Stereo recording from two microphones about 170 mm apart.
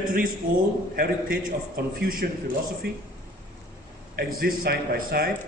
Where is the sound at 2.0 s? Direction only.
55° right (ahead or behind).